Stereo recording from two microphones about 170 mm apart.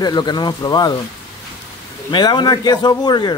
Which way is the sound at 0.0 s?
25° left (ahead or behind).